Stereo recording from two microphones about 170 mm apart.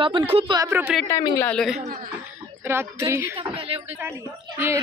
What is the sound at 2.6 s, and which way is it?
Speech, 15° right (ahead or behind).